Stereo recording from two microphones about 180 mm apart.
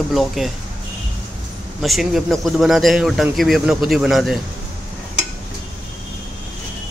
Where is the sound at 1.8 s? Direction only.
Centre (ahead or behind).